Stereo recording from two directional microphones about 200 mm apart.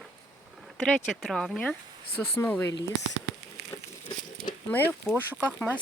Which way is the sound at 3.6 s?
55° right (ahead or behind).